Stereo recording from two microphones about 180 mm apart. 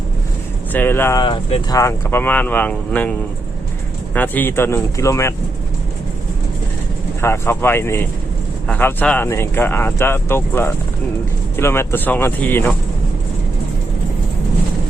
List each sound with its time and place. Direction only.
0.7 s speech: 10° left (ahead or behind)
1.2 s speech: 30° left (ahead or behind)
1.7 s speech: 15° left (ahead or behind)
4.1 s speech: 10° left (ahead or behind)
7.2 s speech: 15° left (ahead or behind)